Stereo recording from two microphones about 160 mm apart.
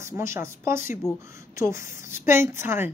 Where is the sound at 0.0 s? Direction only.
15° right (ahead or behind).